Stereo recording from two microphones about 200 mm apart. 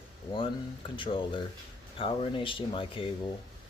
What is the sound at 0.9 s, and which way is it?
Speech, 25° left (ahead or behind).